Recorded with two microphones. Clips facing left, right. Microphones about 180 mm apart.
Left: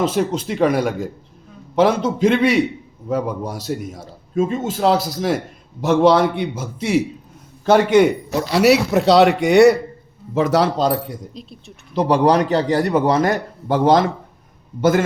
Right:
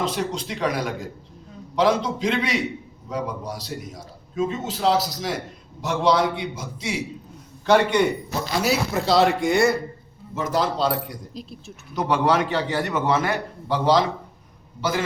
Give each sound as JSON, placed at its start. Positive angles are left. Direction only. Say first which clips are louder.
{"t": 0.1, "sound": "a man's voice", "louder": "left 7 dB", "side_deg": 50}
{"t": 8.3, "sound": "a man's voice", "louder": "left 9 dB", "side_deg": 70}
{"t": 11.3, "sound": "speech", "louder": "even", "side_deg": 0}
{"t": 11.9, "sound": "a man's voice", "louder": "left 6 dB", "side_deg": 35}